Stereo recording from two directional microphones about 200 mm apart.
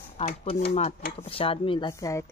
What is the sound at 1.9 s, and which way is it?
Speech, 15° left (ahead or behind).